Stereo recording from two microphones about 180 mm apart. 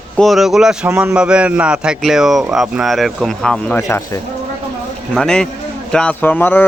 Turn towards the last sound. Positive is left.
turn(degrees=10)  # may be behind; listen again after turning